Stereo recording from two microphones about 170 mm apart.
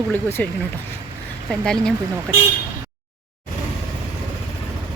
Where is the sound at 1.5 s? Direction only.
5° left (ahead or behind).